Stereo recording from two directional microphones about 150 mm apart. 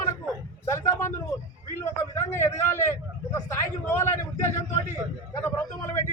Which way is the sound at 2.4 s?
15° left (ahead or behind).